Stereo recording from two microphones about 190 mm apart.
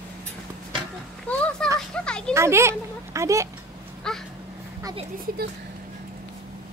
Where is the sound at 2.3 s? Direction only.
15° right (ahead or behind).